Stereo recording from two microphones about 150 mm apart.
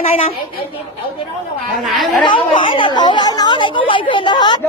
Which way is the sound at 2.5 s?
35° left (ahead or behind).